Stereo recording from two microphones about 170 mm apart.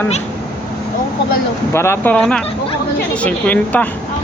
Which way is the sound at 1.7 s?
15° left (ahead or behind).